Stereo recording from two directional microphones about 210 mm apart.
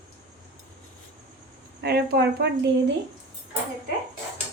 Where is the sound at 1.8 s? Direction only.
50° right (ahead or behind).